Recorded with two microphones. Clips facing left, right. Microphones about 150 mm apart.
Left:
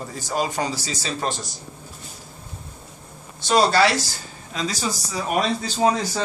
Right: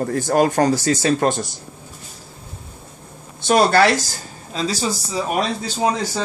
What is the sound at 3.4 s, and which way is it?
Speech, 55° right (ahead or behind).